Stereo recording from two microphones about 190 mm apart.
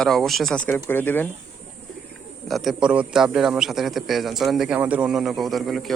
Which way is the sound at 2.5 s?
Centre (ahead or behind).